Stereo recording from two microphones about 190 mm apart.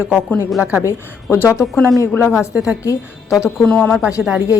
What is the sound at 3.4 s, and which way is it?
Speech, 10° left (ahead or behind).